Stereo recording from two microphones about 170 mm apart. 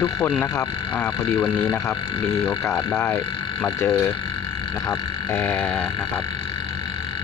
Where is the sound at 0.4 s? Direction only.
10° left (ahead or behind).